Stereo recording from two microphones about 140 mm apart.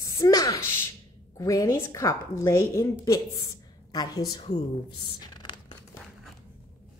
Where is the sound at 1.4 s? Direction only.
25° left (ahead or behind).